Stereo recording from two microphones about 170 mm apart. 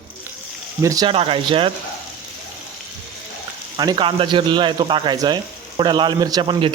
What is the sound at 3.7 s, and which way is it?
Speech, 25° right (ahead or behind).